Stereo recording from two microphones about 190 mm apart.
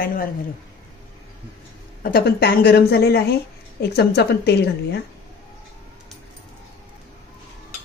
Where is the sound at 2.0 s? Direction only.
55° left (ahead or behind).